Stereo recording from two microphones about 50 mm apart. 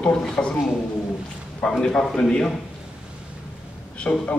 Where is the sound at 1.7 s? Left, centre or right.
Centre.